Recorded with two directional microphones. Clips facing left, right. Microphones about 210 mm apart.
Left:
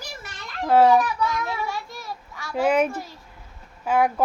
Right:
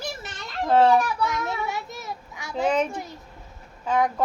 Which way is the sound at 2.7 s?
10° left (ahead or behind).